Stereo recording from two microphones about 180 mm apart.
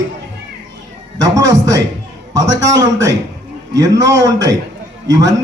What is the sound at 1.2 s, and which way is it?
A man's voice, 20° right (ahead or behind).